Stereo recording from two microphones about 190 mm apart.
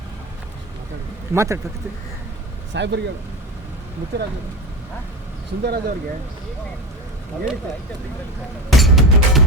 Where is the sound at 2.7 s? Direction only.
65° right (ahead or behind).